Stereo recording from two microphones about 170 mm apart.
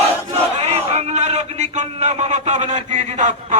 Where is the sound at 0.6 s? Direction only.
40° right (ahead or behind).